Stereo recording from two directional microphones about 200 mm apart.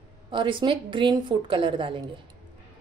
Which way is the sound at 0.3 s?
25° right (ahead or behind).